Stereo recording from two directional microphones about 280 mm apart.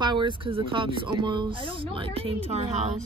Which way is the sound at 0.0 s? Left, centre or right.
Centre.